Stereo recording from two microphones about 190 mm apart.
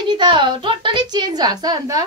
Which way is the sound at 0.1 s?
25° right (ahead or behind).